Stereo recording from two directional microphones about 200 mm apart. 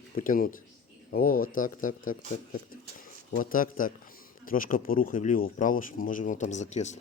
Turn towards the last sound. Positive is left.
turn(degrees=35)  # may be behind; listen again after turning